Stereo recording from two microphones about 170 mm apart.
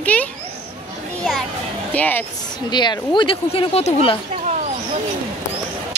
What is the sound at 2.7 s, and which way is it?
Speech, 25° left (ahead or behind).